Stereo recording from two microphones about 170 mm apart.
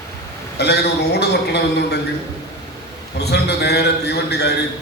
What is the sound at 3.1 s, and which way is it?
A man's voice, 75° left (ahead or behind).